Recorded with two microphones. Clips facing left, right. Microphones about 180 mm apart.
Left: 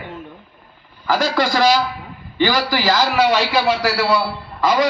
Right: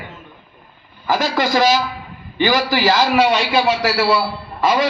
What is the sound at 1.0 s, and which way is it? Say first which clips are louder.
A man's voice: even; 20° right (ahead or behind).